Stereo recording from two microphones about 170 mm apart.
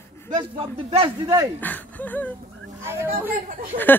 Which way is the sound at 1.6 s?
10° left (ahead or behind).